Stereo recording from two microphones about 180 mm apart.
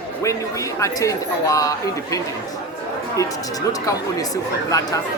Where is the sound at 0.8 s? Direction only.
20° left (ahead or behind).